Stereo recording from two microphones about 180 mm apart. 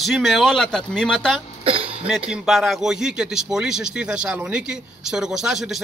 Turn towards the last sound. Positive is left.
turn(degrees=0)  # may be behind; listen again after turning